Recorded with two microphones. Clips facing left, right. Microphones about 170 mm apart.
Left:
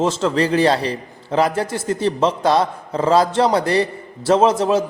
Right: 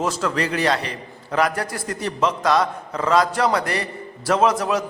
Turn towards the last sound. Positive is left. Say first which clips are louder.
# left 4 dB
turn(degrees=25)  # may be behind; listen again after turning